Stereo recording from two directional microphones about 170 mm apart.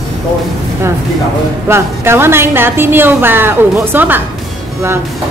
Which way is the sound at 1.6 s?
15° right (ahead or behind).